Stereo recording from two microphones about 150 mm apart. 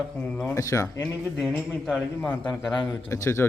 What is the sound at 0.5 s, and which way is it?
Speech, 20° left (ahead or behind).